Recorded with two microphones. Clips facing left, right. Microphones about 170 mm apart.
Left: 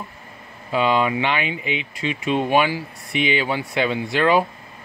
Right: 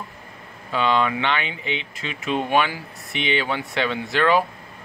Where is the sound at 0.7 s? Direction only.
10° left (ahead or behind).